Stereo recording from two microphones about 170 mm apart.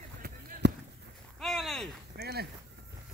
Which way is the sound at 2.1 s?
70° right (ahead or behind).